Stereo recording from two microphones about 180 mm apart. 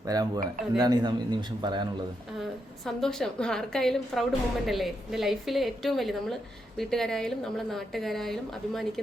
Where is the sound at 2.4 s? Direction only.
Centre (ahead or behind).